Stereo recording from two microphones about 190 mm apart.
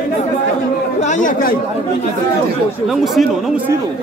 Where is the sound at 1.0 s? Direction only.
40° left (ahead or behind).